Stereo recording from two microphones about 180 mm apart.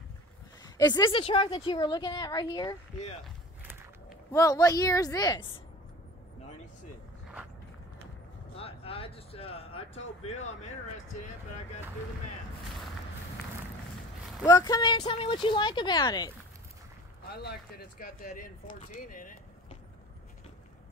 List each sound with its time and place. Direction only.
0.7 s speech: 20° left (ahead or behind)
4.3 s speech: 20° left (ahead or behind)
8.5 s a sound: 30° left (ahead or behind)
10.2 s speech: 40° left (ahead or behind)
14.4 s speech: 20° left (ahead or behind)
17.3 s speech: 60° left (ahead or behind)